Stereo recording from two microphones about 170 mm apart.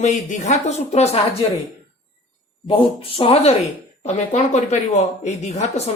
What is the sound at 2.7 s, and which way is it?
Speech, 30° left (ahead or behind).